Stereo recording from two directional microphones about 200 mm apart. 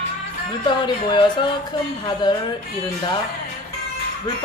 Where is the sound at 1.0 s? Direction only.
25° left (ahead or behind).